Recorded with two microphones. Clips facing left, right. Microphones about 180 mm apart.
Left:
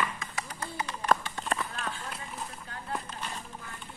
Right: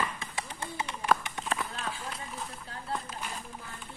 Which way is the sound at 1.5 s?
Centre (ahead or behind).